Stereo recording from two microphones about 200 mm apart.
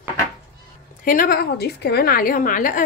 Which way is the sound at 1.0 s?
45° left (ahead or behind).